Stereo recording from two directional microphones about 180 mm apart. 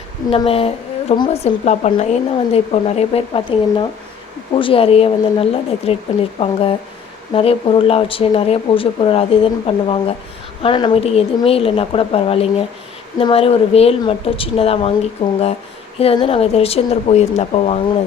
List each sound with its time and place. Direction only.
0.3 s a woman's voice: 30° left (ahead or behind)
16.0 s a woman's voice: 35° left (ahead or behind)